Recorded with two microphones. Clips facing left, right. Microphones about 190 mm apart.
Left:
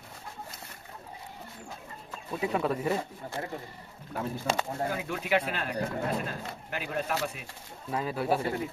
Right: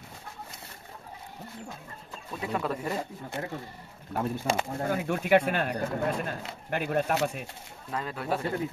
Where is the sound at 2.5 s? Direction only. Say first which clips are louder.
Left 2 dB; 5° left (ahead or behind).